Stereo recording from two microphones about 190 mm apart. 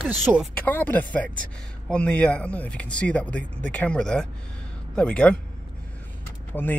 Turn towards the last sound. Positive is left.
turn(degrees=10)  # may be behind; listen again after turning